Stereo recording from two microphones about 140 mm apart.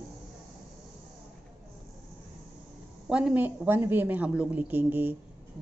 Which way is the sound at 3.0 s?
5° right (ahead or behind).